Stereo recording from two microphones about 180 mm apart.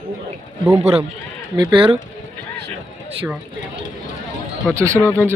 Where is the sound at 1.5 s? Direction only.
25° right (ahead or behind).